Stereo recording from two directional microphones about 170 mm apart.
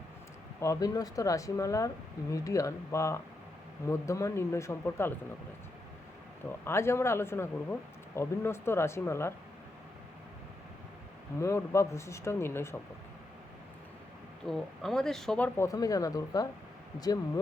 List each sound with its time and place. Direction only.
0.6 s speech: 20° left (ahead or behind)
6.7 s speech: 15° left (ahead or behind)
11.3 s speech: 15° left (ahead or behind)
14.4 s speech: centre (ahead or behind)
15.5 s speech: 20° left (ahead or behind)